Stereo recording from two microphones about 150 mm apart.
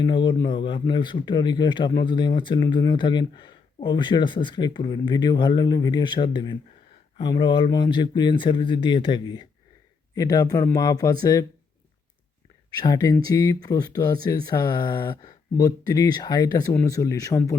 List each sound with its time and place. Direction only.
0.0 s speech: 30° left (ahead or behind)
12.8 s speech: 25° left (ahead or behind)